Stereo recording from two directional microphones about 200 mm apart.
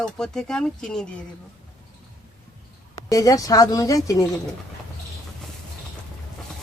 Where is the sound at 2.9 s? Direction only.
20° left (ahead or behind).